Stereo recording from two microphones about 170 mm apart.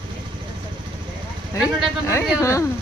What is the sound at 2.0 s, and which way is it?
Speech, 15° left (ahead or behind).